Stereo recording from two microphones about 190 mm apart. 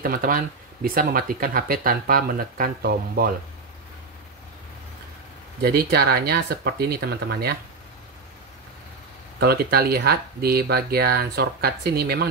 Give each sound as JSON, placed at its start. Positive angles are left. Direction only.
{"t": 0.0, "sound": "speech", "side_deg": -50}
{"t": 5.6, "sound": "speech", "side_deg": -55}
{"t": 9.4, "sound": "speech", "side_deg": -55}